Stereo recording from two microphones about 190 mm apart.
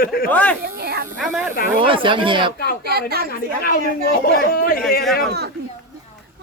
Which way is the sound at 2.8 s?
55° right (ahead or behind).